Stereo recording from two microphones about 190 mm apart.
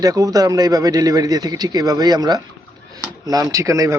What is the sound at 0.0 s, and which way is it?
Speech, 20° right (ahead or behind).